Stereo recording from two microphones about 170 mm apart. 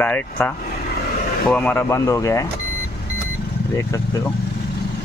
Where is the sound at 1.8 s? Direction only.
20° left (ahead or behind).